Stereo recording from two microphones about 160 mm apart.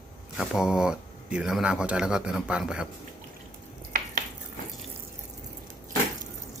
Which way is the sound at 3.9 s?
60° right (ahead or behind).